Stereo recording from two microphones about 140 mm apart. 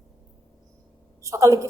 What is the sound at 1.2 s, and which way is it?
Speech, 20° right (ahead or behind).